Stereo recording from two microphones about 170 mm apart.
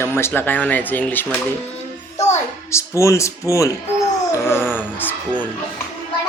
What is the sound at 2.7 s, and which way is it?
Speech, 15° left (ahead or behind).